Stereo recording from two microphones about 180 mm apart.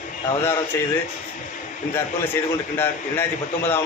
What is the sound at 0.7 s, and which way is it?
Speech, 15° left (ahead or behind).